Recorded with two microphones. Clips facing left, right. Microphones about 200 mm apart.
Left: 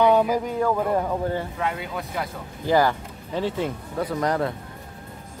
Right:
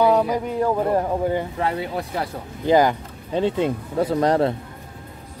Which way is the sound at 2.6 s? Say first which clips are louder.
Right 3 dB; 20° right (ahead or behind).